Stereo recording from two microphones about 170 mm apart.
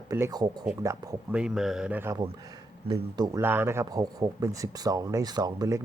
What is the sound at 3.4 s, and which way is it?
Speech, 15° right (ahead or behind).